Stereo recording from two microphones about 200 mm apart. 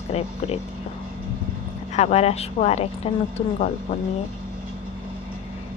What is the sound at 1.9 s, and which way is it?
A woman's voice, 30° left (ahead or behind).